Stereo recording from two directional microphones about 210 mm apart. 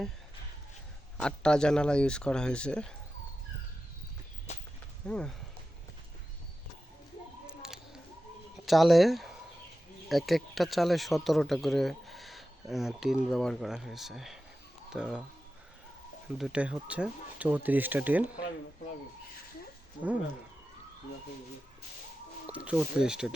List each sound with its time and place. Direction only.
1.2 s speech: 5° left (ahead or behind)
4.5 s a sound: 30° left (ahead or behind)
5.0 s speech: 5° left (ahead or behind)
7.4 s a sound: 5° right (ahead or behind)
8.5 s speech: centre (ahead or behind)
16.4 s speech: 5° right (ahead or behind)
22.4 s speech: 5° right (ahead or behind)